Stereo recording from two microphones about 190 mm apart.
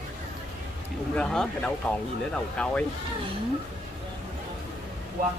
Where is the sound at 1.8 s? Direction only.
5° left (ahead or behind).